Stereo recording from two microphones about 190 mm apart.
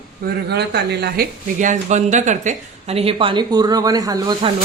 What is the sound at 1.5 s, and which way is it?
Speech, 40° right (ahead or behind).